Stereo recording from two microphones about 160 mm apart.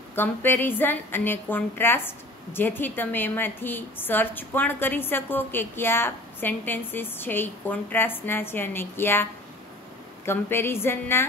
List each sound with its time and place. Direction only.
0.1 s a woman's voice: 15° left (ahead or behind)